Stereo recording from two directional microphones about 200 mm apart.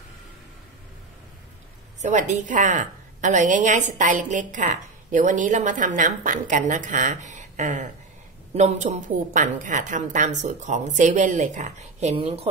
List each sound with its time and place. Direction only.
2.0 s a woman's voice: 35° right (ahead or behind)